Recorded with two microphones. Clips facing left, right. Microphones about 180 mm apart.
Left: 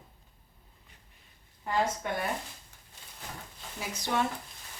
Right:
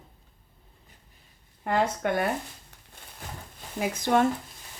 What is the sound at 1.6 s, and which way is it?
Speech, 65° right (ahead or behind).